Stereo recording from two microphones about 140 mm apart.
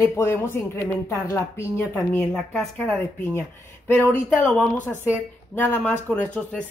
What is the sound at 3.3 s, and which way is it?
Speech, 15° left (ahead or behind).